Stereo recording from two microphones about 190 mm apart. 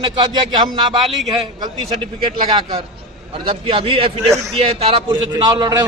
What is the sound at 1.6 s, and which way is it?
A man's voice, 25° right (ahead or behind).